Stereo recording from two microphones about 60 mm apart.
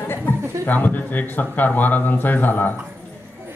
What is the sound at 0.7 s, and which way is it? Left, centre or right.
Speech, left.